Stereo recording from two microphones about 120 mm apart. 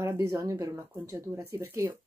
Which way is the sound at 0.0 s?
25° right (ahead or behind).